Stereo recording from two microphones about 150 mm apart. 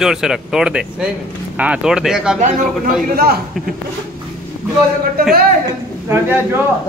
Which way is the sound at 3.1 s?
90° right.